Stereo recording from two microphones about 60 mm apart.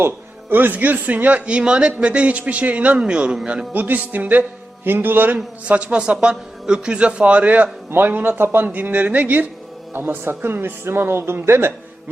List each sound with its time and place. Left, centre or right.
0.5 s speech: right
5.6 s speech: right
7.9 s speech: right